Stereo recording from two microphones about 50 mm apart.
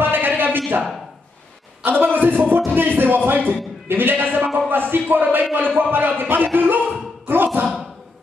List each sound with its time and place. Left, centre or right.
0.0 s a sound: right
1.9 s speech: right
2.5 s music: right
3.9 s speech: right